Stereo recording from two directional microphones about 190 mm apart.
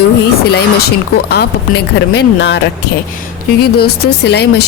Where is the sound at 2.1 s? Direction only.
60° left (ahead or behind).